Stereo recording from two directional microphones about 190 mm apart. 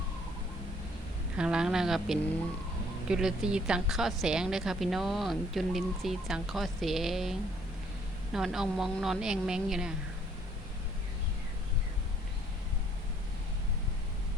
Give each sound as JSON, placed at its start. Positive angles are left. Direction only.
{"t": 1.4, "sound": "a woman's voice", "side_deg": -5}